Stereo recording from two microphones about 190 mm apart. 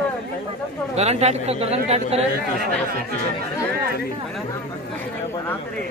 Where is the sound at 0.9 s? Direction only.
35° right (ahead or behind).